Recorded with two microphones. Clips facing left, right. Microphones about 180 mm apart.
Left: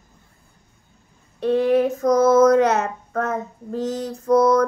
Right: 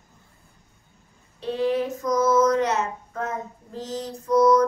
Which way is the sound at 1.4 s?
55° left (ahead or behind).